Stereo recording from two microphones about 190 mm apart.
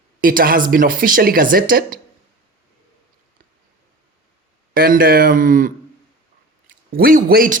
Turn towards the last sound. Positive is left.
turn(degrees=-50)  # may be behind; listen again after turning